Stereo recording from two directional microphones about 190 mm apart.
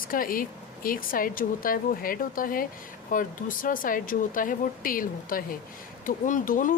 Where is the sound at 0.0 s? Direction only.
50° left (ahead or behind).